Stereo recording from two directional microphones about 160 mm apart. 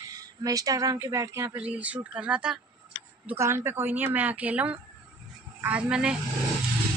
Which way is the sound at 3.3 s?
15° right (ahead or behind).